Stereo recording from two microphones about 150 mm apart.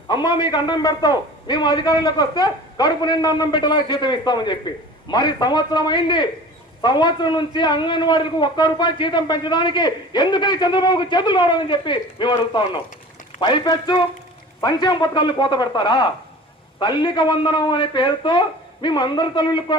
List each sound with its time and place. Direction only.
0.1 s a man's voice: 30° left (ahead or behind)